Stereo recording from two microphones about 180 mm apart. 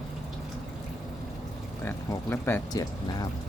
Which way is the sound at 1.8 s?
10° left (ahead or behind).